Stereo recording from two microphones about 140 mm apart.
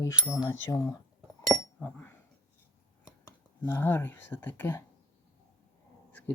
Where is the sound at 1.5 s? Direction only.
10° left (ahead or behind).